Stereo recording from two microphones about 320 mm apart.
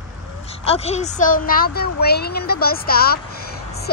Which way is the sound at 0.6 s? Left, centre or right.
Centre.